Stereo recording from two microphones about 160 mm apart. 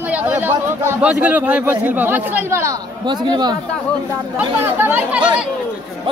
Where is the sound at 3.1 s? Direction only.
25° right (ahead or behind).